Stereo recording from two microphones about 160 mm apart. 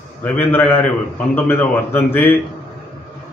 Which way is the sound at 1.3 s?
15° left (ahead or behind).